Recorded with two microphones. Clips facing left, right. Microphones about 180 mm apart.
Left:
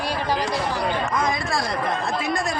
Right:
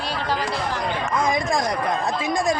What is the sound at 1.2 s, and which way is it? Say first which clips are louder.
Speech: right 3 dB; 15° right (ahead or behind).